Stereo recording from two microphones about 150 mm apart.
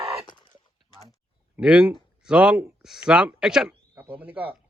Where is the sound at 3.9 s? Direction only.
15° right (ahead or behind).